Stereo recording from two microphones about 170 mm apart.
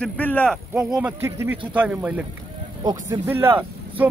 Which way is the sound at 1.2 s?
15° right (ahead or behind).